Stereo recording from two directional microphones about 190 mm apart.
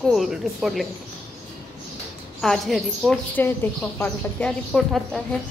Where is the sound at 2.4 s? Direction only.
Centre (ahead or behind).